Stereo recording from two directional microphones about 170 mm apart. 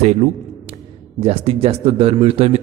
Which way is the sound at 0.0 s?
40° right (ahead or behind).